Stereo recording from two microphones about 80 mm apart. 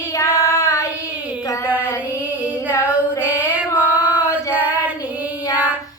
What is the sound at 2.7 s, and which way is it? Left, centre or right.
Female singing, left.